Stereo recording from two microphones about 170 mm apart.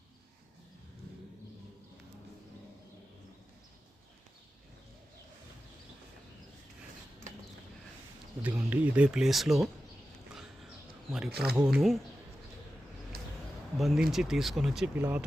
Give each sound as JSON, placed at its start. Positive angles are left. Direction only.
{"t": 8.4, "sound": "speech", "side_deg": -10}
{"t": 11.3, "sound": "speech", "side_deg": -70}
{"t": 11.5, "sound": "speech", "side_deg": -5}
{"t": 13.1, "sound": "a sound", "side_deg": -65}
{"t": 13.7, "sound": "speech", "side_deg": 0}
{"t": 14.9, "sound": "speech", "side_deg": -10}